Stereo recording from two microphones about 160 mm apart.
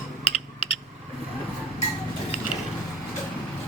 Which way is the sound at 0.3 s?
35° left (ahead or behind).